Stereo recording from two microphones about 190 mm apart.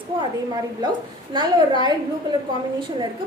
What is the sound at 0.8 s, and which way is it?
A woman's voice, 20° right (ahead or behind).